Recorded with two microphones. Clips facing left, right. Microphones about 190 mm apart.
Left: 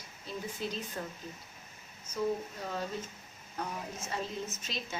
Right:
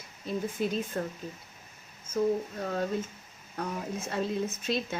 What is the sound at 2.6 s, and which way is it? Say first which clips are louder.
Speech: right 6 dB; 55° right (ahead or behind).